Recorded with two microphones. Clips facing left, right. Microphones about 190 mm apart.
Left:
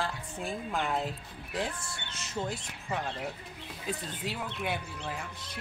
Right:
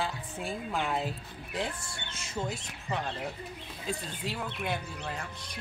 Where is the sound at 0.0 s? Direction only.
5° right (ahead or behind).